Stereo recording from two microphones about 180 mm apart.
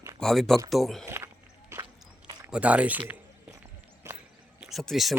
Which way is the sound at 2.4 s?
5° right (ahead or behind).